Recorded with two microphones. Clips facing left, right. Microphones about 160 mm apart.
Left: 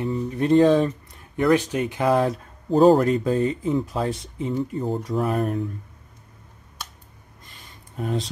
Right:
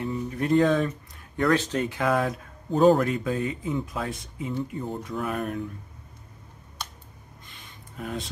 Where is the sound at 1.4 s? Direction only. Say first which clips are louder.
Left 4 dB; 15° left (ahead or behind); by 5.7 s 35° left (ahead or behind).